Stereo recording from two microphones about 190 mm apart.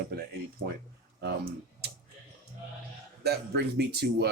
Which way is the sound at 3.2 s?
60° right (ahead or behind).